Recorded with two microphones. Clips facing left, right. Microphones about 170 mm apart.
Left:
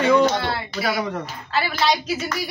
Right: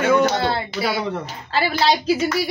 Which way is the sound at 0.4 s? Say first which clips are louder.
Right 4 dB; 25° right (ahead or behind).